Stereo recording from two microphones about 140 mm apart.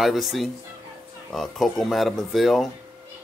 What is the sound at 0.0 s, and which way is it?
Speech, centre (ahead or behind).